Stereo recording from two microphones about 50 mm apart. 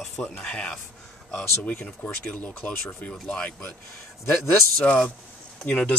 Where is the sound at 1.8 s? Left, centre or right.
Left.